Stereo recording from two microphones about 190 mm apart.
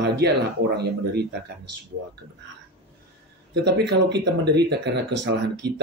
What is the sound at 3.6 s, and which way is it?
Speech, 65° right (ahead or behind).